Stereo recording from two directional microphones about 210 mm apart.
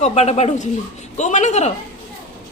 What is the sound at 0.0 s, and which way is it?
A woman's voice, 30° left (ahead or behind).